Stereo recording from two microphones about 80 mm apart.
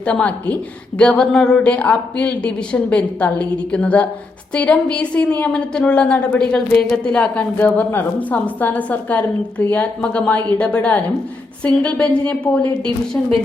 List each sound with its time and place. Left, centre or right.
0.0 s a woman's voice: centre